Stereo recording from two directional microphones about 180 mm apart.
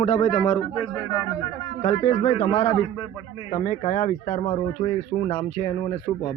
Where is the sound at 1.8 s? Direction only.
35° left (ahead or behind).